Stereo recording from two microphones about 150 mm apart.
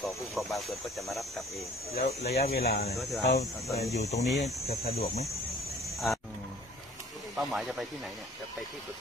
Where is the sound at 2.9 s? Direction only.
Centre (ahead or behind).